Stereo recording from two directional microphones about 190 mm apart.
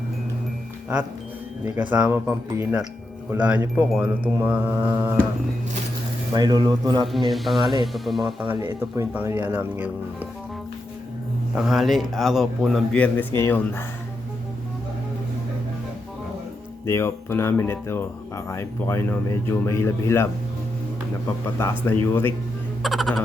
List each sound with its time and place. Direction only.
1.6 s speech: 10° right (ahead or behind)
6.3 s speech: 20° right (ahead or behind)
7.3 s a man's voice: centre (ahead or behind)
11.5 s a man's voice: centre (ahead or behind)
16.8 s speech: 15° left (ahead or behind)
22.0 s speech: 10° left (ahead or behind)
22.8 s a man's voice: centre (ahead or behind)